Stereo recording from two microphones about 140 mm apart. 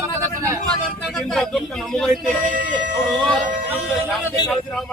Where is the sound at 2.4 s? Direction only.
70° right (ahead or behind).